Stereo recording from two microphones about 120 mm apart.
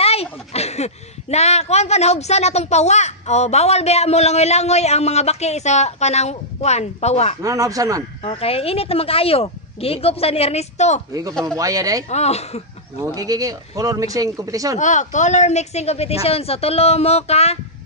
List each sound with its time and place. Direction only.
0.0 s speech: 55° left (ahead or behind)
7.4 s speech: 30° right (ahead or behind)
8.2 s speech: 50° left (ahead or behind)
11.4 s speech: 30° right (ahead or behind)
12.1 s speech: 65° left (ahead or behind)
13.0 s speech: 30° right (ahead or behind)
14.8 s speech: 90° left; by 17.6 s 60° left (ahead or behind)